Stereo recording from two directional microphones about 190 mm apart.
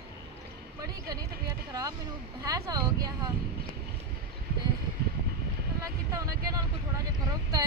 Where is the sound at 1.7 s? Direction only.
20° right (ahead or behind).